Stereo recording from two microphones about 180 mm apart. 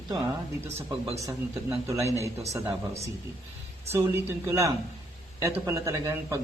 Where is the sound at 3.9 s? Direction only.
15° right (ahead or behind).